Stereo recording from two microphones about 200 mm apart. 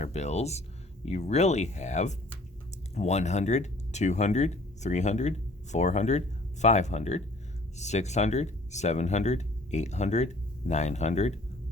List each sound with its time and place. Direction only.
0.0 s speech: 35° left (ahead or behind)